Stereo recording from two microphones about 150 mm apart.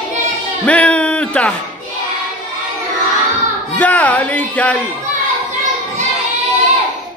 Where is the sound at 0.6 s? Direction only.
10° left (ahead or behind).